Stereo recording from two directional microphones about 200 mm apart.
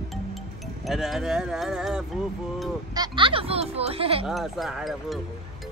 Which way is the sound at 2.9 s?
25° right (ahead or behind).